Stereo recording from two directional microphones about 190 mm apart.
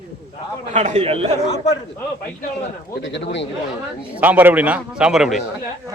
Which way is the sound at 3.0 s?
70° left (ahead or behind).